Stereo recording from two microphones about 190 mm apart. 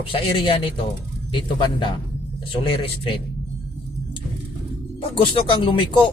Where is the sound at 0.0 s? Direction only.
25° left (ahead or behind).